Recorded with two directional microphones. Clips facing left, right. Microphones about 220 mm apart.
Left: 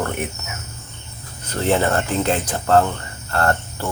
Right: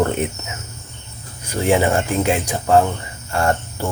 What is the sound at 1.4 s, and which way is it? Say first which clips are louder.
Speech: right 2 dB; 10° right (ahead or behind).